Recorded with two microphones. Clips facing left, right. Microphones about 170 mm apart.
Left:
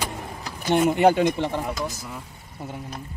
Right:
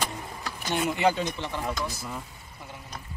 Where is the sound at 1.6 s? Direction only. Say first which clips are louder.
Left 2 dB; 5° left (ahead or behind).